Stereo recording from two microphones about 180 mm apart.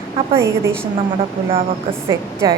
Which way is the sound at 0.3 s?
15° right (ahead or behind).